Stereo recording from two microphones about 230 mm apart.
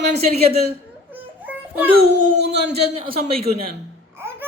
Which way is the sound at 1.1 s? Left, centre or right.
Centre.